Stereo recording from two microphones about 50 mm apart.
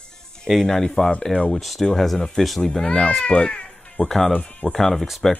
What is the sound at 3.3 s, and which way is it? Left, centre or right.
Cat, left.